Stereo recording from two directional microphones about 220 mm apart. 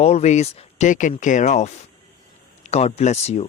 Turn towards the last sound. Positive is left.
turn(degrees=30)  # may be behind; listen again after turning